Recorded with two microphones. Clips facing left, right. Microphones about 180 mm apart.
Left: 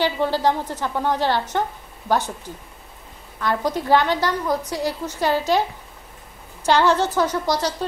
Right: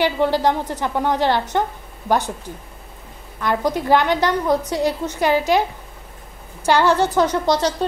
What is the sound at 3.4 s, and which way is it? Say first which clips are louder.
A woman's voice: right 2 dB; 15° right (ahead or behind).